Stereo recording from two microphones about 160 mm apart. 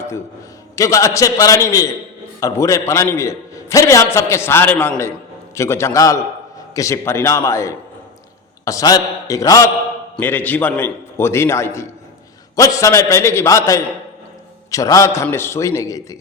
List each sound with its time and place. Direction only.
0.8 s a man's voice: 20° left (ahead or behind)
10.2 s a man's voice: 10° left (ahead or behind)